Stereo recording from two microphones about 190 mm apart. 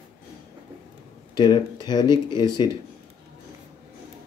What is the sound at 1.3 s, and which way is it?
Speech, 20° left (ahead or behind).